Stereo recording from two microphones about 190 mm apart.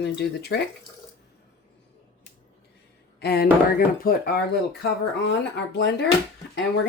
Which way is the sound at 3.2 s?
55° left (ahead or behind).